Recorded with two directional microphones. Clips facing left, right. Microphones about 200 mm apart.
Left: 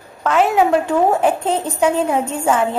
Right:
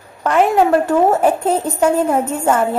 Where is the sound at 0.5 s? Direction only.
5° right (ahead or behind).